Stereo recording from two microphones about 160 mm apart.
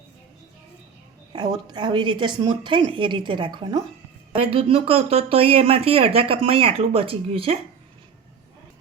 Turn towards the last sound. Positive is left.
turn(degrees=-35)  # may be behind; listen again after turning